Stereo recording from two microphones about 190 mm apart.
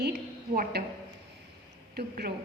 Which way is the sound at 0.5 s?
50° right (ahead or behind).